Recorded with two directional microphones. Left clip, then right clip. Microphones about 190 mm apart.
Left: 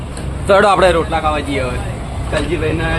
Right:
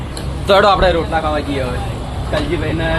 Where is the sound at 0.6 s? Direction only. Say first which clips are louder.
Left 2 dB; 50° left (ahead or behind).